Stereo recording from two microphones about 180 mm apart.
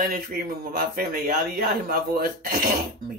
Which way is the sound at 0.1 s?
55° right (ahead or behind).